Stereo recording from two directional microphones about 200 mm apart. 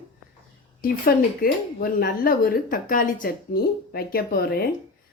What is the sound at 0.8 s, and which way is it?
A woman's voice, 45° left (ahead or behind).